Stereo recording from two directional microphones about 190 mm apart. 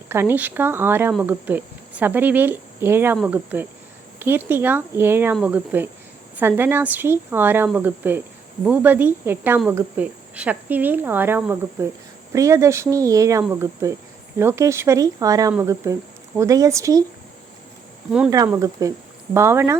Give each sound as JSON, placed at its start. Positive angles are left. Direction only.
{"t": 0.1, "sound": "speech", "side_deg": -10}
{"t": 18.3, "sound": "speech", "side_deg": -15}